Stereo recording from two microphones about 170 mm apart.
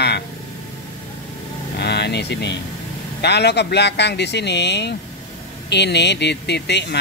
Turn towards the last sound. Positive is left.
turn(degrees=85)